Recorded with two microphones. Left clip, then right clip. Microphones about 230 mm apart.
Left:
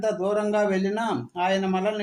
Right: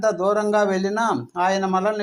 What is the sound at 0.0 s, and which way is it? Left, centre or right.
Speech, centre.